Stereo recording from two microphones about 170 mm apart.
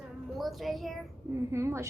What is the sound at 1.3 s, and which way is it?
Speech, 15° right (ahead or behind).